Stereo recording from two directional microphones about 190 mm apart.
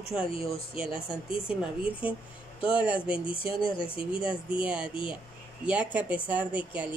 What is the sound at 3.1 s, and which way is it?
Speech, 25° left (ahead or behind).